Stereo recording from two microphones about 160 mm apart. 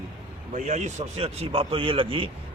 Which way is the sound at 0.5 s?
45° right (ahead or behind).